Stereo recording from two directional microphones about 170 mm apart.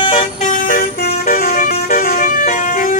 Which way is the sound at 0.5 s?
55° left (ahead or behind).